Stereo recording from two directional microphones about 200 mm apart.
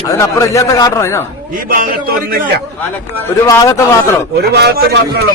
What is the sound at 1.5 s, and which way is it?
Speech, 45° right (ahead or behind).